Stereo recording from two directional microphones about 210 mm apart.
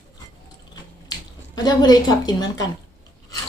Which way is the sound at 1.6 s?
20° left (ahead or behind).